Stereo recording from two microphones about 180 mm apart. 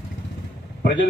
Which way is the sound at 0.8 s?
80° left.